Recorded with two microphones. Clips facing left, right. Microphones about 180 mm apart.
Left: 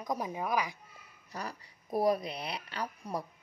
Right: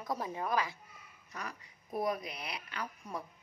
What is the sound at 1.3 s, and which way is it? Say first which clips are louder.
Speech: left 4 dB; 35° left (ahead or behind).